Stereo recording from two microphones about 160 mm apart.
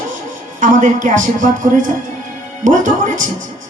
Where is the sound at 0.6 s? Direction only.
55° right (ahead or behind).